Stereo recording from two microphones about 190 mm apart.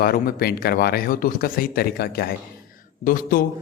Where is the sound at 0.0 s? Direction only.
50° left (ahead or behind).